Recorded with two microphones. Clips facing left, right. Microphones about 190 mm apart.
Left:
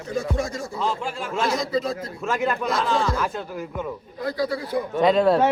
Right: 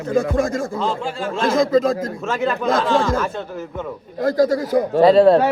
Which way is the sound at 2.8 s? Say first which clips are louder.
Right 3 dB; centre (ahead or behind).